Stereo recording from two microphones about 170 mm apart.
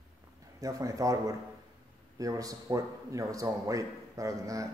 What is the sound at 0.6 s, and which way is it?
A man's voice, 20° right (ahead or behind).